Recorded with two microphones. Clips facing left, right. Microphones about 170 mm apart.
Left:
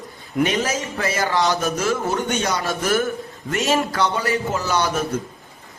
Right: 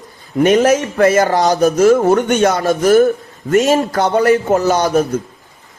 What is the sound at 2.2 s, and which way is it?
A man's voice, 60° right (ahead or behind).